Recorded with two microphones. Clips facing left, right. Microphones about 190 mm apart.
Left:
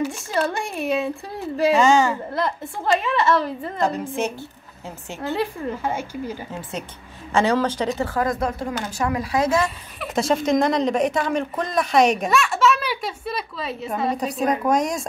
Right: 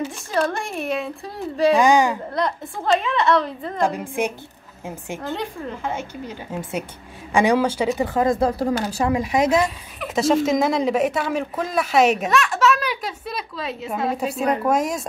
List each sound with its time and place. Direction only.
0.3 s speech: centre (ahead or behind)
1.8 s a woman's voice: 15° right (ahead or behind)
2.3 s speech: 5° left (ahead or behind)
3.8 s a woman's voice: 10° right (ahead or behind)
5.3 s speech: 5° left (ahead or behind)
7.3 s speech: 10° right (ahead or behind)
9.9 s speech: centre (ahead or behind)